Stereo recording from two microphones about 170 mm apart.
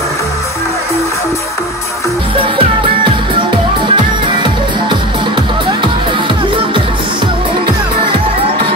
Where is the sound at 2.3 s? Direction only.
30° right (ahead or behind).